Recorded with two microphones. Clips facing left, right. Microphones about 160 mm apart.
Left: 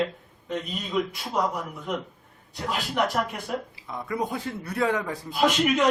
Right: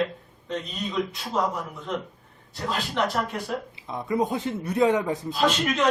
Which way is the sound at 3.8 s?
20° right (ahead or behind).